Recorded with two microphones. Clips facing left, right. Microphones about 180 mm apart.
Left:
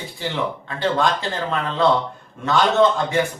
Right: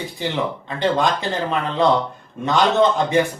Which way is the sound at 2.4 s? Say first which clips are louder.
Even; 20° right (ahead or behind).